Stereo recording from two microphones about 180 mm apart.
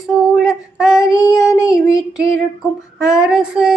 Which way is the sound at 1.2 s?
20° left (ahead or behind).